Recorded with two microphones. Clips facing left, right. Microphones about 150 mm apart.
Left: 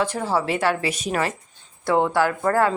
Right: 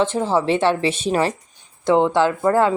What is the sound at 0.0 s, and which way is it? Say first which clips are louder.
Speech: right 4 dB; 25° right (ahead or behind).